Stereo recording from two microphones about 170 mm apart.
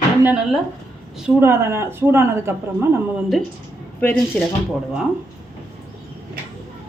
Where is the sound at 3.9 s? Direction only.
10° left (ahead or behind).